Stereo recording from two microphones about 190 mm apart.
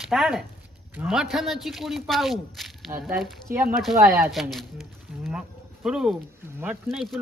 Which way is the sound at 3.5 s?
10° right (ahead or behind).